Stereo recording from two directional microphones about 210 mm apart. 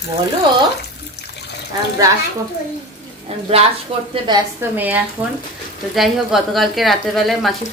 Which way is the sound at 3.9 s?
25° right (ahead or behind).